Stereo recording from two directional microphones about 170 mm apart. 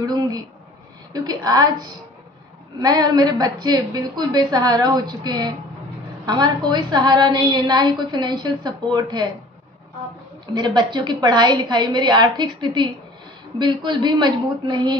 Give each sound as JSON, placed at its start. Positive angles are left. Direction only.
{"t": 0.0, "sound": "a sound", "side_deg": -25}
{"t": 1.1, "sound": "a woman's voice", "side_deg": -25}
{"t": 10.5, "sound": "a woman's voice", "side_deg": -25}